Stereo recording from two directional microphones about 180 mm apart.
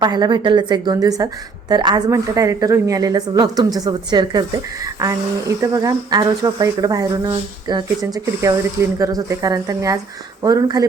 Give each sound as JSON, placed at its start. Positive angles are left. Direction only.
{"t": 0.0, "sound": "a woman's voice", "side_deg": -20}